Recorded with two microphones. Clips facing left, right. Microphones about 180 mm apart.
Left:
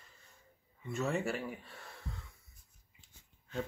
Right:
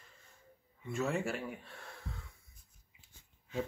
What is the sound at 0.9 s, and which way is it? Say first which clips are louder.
Speech: even; centre (ahead or behind).